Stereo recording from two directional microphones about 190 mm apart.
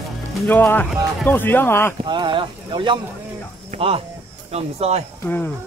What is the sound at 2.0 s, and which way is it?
Speech, 25° right (ahead or behind).